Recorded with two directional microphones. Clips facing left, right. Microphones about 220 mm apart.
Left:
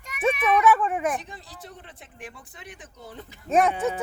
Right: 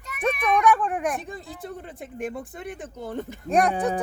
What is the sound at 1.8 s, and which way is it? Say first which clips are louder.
Speech: right 11 dB; 50° right (ahead or behind).